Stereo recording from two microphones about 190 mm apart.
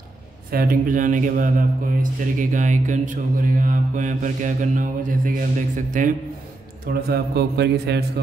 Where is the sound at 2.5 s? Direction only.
40° right (ahead or behind).